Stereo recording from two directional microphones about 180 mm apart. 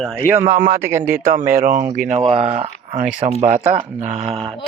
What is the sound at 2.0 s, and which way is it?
Speech, 35° right (ahead or behind).